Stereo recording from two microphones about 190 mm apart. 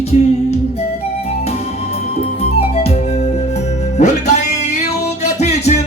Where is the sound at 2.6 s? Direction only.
35° left (ahead or behind).